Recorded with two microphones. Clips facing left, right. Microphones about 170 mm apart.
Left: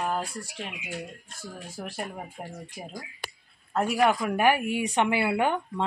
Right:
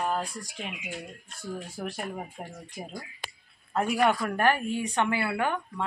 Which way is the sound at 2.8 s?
10° left (ahead or behind).